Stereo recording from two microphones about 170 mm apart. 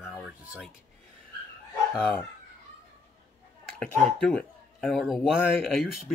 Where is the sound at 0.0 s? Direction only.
Centre (ahead or behind).